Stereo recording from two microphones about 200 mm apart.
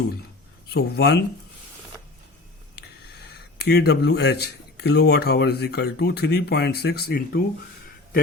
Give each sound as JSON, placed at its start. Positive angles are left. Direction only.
{"t": 0.7, "sound": "speech", "side_deg": 55}
{"t": 3.6, "sound": "speech", "side_deg": 55}